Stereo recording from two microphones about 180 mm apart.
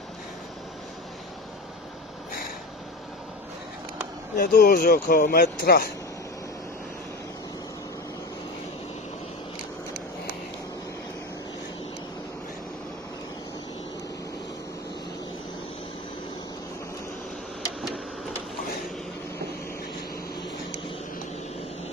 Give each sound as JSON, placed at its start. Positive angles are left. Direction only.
{"t": 4.4, "sound": "speech", "side_deg": 55}